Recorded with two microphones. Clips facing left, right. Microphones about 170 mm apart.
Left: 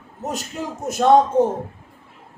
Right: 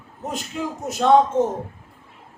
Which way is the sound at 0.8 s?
50° left (ahead or behind).